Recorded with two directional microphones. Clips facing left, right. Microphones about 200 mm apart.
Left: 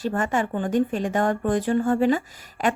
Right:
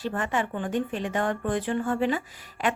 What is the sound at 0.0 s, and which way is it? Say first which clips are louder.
Speech: left 4 dB; 45° left (ahead or behind).